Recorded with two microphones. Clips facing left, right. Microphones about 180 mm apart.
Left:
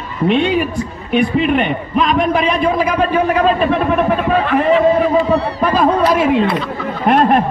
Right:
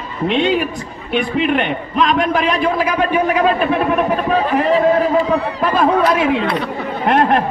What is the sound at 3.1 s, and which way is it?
A man's voice, 10° right (ahead or behind).